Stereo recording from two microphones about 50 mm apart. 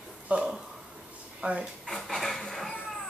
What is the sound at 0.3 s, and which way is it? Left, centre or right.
Speech, right.